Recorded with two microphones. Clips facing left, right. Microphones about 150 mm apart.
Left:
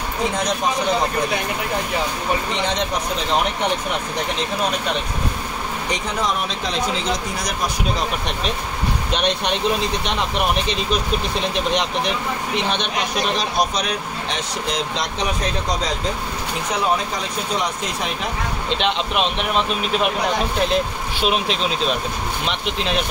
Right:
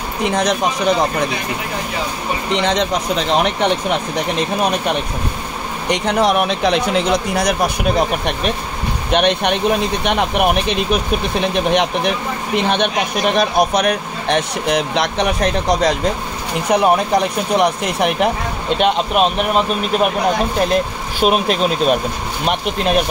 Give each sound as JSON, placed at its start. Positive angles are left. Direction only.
{"t": 0.2, "sound": "speech", "side_deg": -80}
{"t": 2.5, "sound": "speech", "side_deg": -70}
{"t": 5.9, "sound": "speech", "side_deg": -70}